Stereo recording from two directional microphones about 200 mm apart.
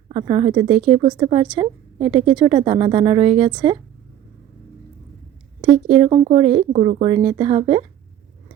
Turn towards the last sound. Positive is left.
turn(degrees=-25)  # may be behind; listen again after turning